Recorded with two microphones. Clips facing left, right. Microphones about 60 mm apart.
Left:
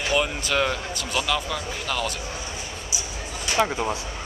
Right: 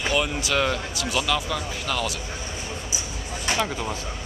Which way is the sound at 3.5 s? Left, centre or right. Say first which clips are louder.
Left 4 dB; centre.